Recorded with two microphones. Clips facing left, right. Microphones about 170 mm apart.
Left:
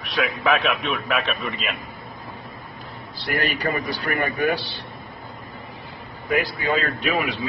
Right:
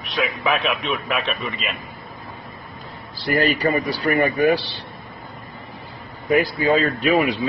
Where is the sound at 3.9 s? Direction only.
35° right (ahead or behind).